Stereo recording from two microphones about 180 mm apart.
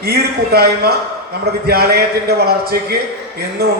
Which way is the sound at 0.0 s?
60° right (ahead or behind).